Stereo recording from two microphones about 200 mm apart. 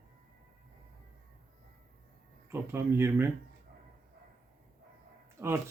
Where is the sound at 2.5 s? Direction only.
10° right (ahead or behind).